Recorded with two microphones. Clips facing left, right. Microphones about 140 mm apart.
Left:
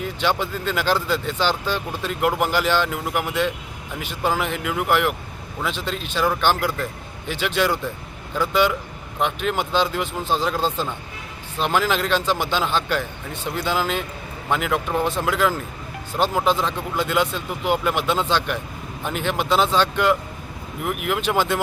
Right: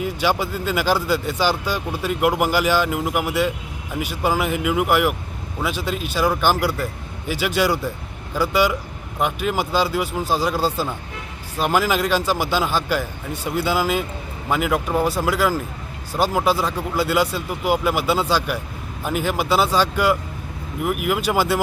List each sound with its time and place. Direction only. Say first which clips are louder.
0.0 s speech: right 2 dB; 10° right (ahead or behind)